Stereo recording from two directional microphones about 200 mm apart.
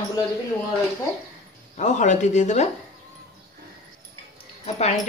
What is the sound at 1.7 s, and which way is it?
Speech, 35° left (ahead or behind).